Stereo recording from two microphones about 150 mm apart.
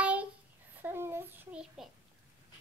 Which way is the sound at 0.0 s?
10° right (ahead or behind).